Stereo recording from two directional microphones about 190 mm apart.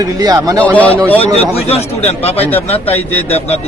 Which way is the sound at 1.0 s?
10° left (ahead or behind).